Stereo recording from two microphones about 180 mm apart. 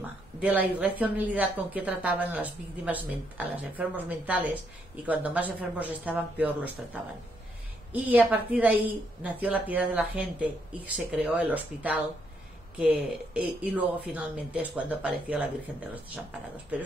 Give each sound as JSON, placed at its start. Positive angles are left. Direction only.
{"t": 0.4, "sound": "speech", "side_deg": -10}